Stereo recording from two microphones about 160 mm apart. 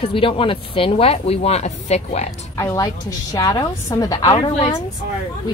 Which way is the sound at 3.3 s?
20° left (ahead or behind).